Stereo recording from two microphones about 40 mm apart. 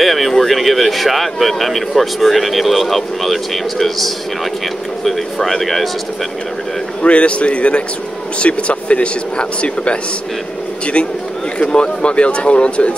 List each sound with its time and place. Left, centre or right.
0.0 s speech: centre
7.0 s a man's voice: left
11.7 s speech: left